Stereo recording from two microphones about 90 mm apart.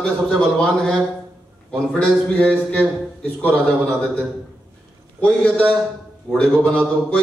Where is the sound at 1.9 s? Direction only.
10° left (ahead or behind).